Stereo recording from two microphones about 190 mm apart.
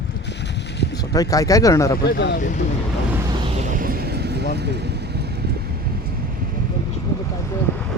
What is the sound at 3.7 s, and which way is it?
Vehicle, 50° right (ahead or behind).